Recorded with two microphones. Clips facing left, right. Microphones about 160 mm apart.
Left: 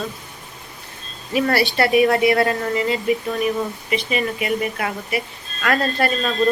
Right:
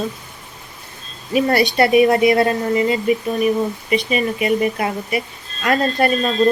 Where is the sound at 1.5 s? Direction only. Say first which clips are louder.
Right 3 dB; 20° right (ahead or behind).